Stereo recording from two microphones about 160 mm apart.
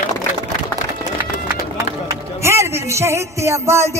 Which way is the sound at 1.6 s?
20° right (ahead or behind).